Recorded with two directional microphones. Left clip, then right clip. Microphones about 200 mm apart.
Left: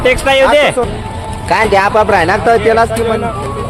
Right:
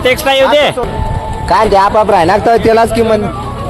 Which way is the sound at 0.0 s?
5° right (ahead or behind).